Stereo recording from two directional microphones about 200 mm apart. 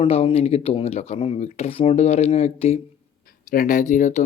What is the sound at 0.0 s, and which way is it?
Speech, 30° left (ahead or behind).